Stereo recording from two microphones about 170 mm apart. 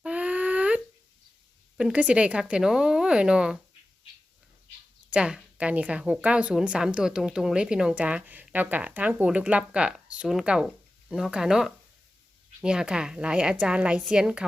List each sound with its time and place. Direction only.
0.0 s a sound: 10° right (ahead or behind)
1.8 s speech: 5° right (ahead or behind)
5.1 s a woman's voice: 5° right (ahead or behind)